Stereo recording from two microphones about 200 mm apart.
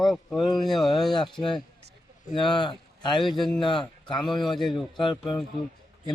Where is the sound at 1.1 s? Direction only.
20° left (ahead or behind).